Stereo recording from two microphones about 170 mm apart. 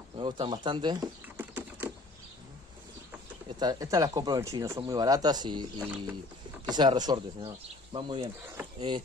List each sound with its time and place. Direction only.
0.2 s speech: 30° right (ahead or behind)
1.3 s typing: 10° right (ahead or behind)
3.5 s speech: 20° right (ahead or behind)
5.8 s music: 10° right (ahead or behind)
6.7 s speech: 25° right (ahead or behind)